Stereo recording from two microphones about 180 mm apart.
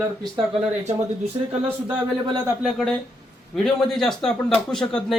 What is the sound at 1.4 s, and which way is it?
Speech, 25° right (ahead or behind).